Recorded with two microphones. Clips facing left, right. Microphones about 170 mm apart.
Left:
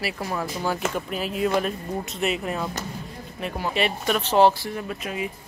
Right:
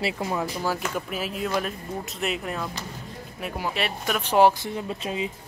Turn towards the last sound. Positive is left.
turn(degrees=-25)  # may be behind; listen again after turning